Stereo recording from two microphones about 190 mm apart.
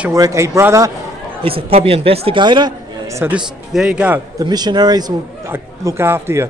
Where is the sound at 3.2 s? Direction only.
5° right (ahead or behind).